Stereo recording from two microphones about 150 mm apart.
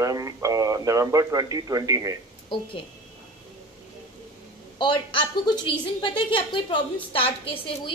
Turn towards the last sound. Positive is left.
turn(degrees=40)  # may be behind; listen again after turning